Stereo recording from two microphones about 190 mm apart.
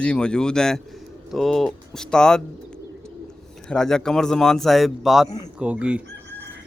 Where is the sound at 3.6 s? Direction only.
5° left (ahead or behind).